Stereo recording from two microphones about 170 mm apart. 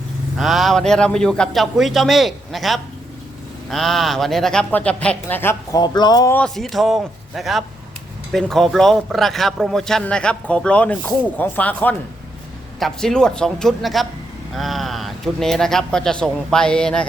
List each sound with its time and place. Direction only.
0.3 s a man's voice: centre (ahead or behind)
5.8 s speech: 25° left (ahead or behind)
6.3 s a man's voice: 5° left (ahead or behind)